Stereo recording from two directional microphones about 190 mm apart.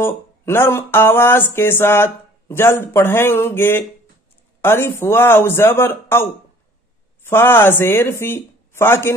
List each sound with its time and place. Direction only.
0.0 s speech: 10° left (ahead or behind)
7.2 s speech: 15° left (ahead or behind)